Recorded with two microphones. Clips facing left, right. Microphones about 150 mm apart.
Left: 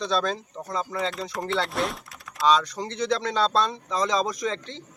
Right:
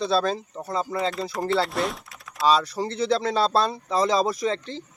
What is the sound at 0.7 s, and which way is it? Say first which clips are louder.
Speech: right 3 dB; 30° right (ahead or behind).